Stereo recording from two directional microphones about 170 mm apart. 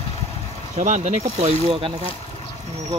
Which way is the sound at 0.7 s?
40° right (ahead or behind).